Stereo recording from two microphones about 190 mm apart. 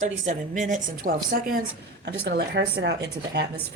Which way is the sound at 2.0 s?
60° right (ahead or behind).